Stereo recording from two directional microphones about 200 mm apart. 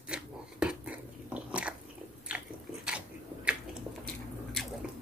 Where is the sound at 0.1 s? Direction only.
5° right (ahead or behind).